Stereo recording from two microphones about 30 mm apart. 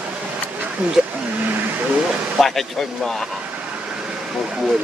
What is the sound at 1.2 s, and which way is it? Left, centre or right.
Speech, right.